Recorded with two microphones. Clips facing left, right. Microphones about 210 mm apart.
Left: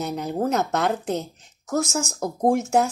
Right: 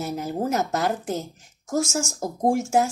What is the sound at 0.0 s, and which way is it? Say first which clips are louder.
Speech: left 1 dB; 5° right (ahead or behind).